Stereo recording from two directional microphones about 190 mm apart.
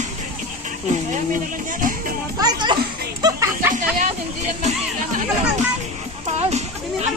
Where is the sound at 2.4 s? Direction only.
25° right (ahead or behind).